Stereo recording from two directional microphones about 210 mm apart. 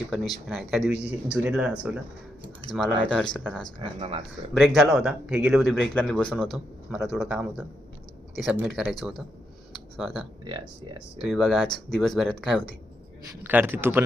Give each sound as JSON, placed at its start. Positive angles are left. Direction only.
{"t": 0.1, "sound": "speech", "side_deg": 0}
{"t": 3.8, "sound": "speech", "side_deg": -25}
{"t": 4.5, "sound": "speech", "side_deg": 0}
{"t": 10.4, "sound": "speech", "side_deg": -20}
{"t": 11.2, "sound": "speech", "side_deg": 0}
{"t": 13.4, "sound": "a man's voice", "side_deg": -10}